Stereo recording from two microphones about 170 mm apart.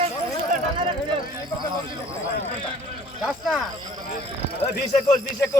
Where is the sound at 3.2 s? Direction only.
Centre (ahead or behind).